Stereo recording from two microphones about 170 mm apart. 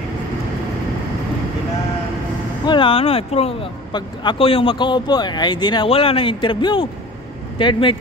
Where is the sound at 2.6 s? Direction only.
30° left (ahead or behind).